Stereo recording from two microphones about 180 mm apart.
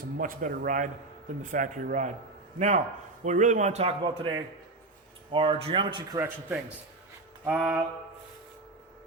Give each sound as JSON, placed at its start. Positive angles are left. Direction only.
{"t": 0.2, "sound": "a man's voice", "side_deg": -50}
{"t": 6.1, "sound": "speech", "side_deg": -10}